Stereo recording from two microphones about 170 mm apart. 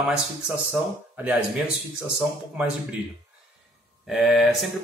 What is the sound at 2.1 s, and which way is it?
Speech, 5° right (ahead or behind).